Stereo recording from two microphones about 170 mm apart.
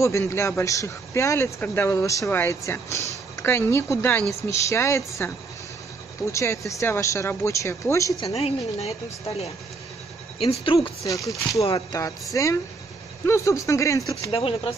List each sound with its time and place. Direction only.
0.0 s speech: 15° left (ahead or behind)
8.2 s a woman's voice: 35° left (ahead or behind)
10.4 s a woman's voice: 35° left (ahead or behind)
11.1 s speech: 20° left (ahead or behind)
14.3 s a woman's voice: 35° left (ahead or behind)